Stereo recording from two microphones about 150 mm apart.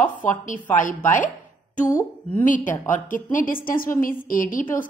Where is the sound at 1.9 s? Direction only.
20° left (ahead or behind).